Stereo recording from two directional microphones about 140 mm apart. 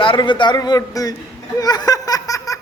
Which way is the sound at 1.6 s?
25° left (ahead or behind).